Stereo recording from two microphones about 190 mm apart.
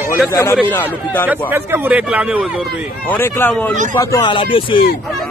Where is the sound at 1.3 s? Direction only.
10° right (ahead or behind).